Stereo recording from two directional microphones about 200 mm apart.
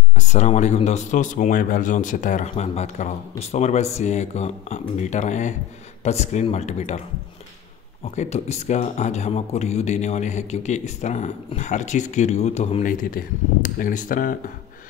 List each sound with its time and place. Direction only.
0.1 s speech: 35° left (ahead or behind)
8.0 s speech: 35° left (ahead or behind)